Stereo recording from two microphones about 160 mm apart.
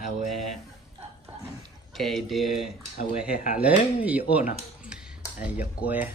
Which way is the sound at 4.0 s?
10° right (ahead or behind).